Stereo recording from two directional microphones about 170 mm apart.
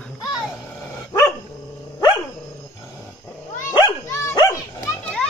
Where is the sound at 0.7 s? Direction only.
20° left (ahead or behind).